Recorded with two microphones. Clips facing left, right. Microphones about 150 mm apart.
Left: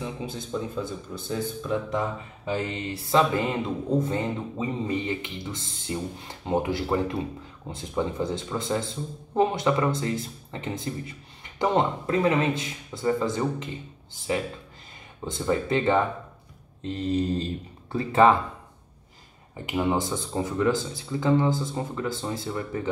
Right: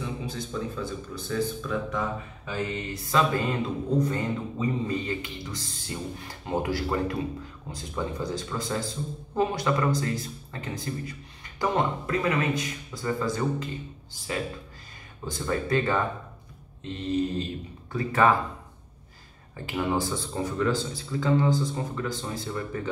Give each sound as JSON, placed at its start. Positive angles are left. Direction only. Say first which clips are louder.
{"t": 0.0, "sound": "speech", "louder": "even", "side_deg": 20}
{"t": 15.2, "sound": "speech", "louder": "left 3 dB", "side_deg": 20}
{"t": 16.9, "sound": "mantra", "louder": "left 2 dB", "side_deg": 35}
{"t": 17.9, "sound": "speech", "louder": "left 3 dB", "side_deg": 25}
{"t": 19.5, "sound": "speech", "louder": "left 2 dB", "side_deg": 15}